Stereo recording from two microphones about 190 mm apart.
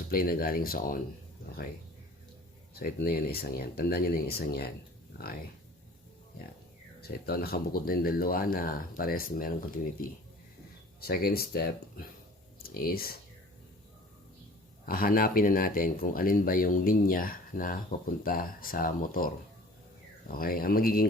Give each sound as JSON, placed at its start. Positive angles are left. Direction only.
{"t": 0.1, "sound": "speech", "side_deg": 50}
{"t": 2.7, "sound": "speech", "side_deg": 55}
{"t": 7.3, "sound": "speech", "side_deg": 55}
{"t": 14.8, "sound": "speech", "side_deg": 50}